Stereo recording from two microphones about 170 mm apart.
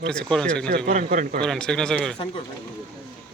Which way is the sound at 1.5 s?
5° left (ahead or behind).